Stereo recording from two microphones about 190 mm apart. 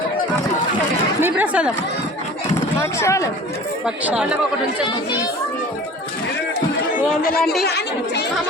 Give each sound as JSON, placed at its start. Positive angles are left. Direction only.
{"t": 1.2, "sound": "speech", "side_deg": -5}
{"t": 2.8, "sound": "speech", "side_deg": 15}
{"t": 3.8, "sound": "speech", "side_deg": -5}
{"t": 6.9, "sound": "speech", "side_deg": 50}